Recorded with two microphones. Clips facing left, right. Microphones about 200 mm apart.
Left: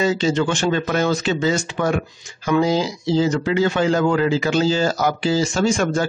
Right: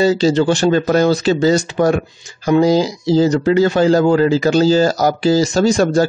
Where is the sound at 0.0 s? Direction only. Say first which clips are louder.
Right 6 dB; 35° right (ahead or behind).